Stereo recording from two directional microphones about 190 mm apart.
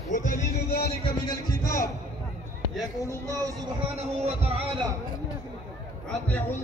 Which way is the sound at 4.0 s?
35° right (ahead or behind).